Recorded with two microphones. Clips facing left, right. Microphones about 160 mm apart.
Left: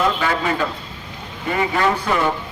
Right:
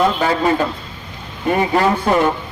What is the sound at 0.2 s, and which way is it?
Speech, 35° right (ahead or behind).